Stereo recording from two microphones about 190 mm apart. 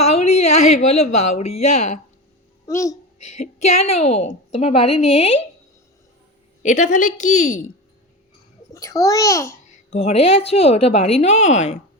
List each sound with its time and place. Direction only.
0.0 s a sound: 35° left (ahead or behind)
0.9 s a woman's voice: 35° left (ahead or behind)
2.6 s a child's voice: 15° left (ahead or behind)
3.2 s female singing: 35° left (ahead or behind)
3.9 s a woman's voice: 35° left (ahead or behind)
6.6 s a woman's voice: 40° left (ahead or behind)
8.7 s a child's voice: 15° left (ahead or behind)
9.6 s a woman's voice: 40° left (ahead or behind)